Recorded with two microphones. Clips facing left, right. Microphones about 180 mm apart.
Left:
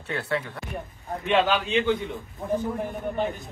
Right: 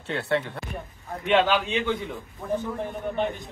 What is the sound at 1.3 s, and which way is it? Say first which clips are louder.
Speech: even; 15° left (ahead or behind).